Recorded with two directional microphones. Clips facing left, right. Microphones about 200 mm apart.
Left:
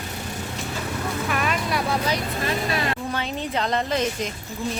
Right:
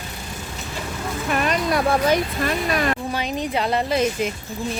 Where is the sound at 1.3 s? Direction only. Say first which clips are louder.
Right 6 dB; 45° right (ahead or behind).